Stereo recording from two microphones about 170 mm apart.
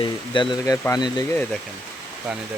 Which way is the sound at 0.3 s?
25° left (ahead or behind).